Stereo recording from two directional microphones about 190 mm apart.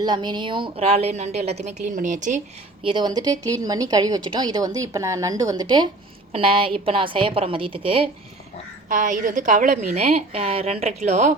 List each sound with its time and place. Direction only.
0.0 s a woman's voice: 25° right (ahead or behind); by 2.4 s 40° right (ahead or behind)
2.8 s a woman's voice: 25° right (ahead or behind)
8.9 s a woman's voice: 40° right (ahead or behind)